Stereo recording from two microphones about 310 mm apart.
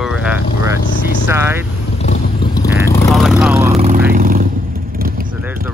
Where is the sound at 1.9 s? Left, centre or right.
Left.